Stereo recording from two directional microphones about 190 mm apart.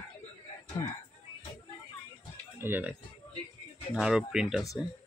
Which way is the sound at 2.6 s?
10° right (ahead or behind).